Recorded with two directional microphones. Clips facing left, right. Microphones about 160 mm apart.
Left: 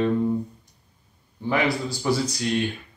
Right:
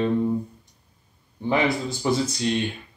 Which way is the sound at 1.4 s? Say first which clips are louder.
Right 1 dB; 20° right (ahead or behind).